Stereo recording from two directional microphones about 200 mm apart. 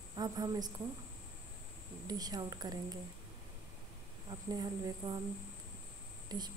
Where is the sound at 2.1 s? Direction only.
20° right (ahead or behind).